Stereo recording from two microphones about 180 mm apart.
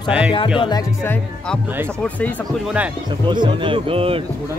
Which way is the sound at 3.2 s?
25° right (ahead or behind).